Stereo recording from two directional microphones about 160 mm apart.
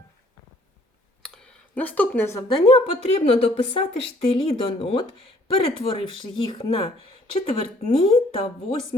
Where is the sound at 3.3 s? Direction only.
40° left (ahead or behind).